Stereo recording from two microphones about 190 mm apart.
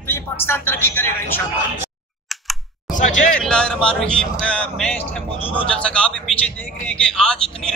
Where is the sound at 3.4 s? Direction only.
5° left (ahead or behind).